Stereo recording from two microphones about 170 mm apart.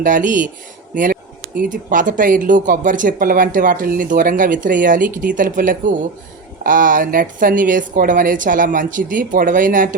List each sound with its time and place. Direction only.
0.0 s speech: 50° right (ahead or behind)